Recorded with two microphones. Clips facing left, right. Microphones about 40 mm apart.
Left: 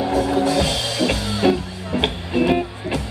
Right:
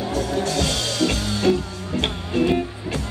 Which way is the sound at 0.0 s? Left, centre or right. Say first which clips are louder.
Left 5 dB; centre.